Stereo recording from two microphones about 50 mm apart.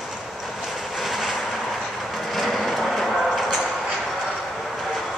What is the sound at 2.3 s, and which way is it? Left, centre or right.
Vehicle, centre.